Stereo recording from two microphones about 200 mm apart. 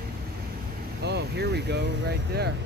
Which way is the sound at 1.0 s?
55° right (ahead or behind).